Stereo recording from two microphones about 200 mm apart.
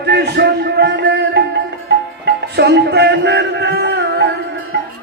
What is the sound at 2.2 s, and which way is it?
Music, 55° right (ahead or behind).